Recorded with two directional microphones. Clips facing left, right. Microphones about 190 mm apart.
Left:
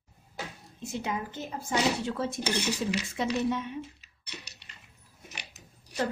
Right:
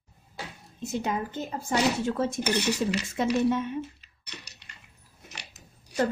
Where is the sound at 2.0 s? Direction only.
45° right (ahead or behind).